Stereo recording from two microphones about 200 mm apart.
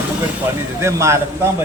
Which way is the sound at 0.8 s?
15° right (ahead or behind).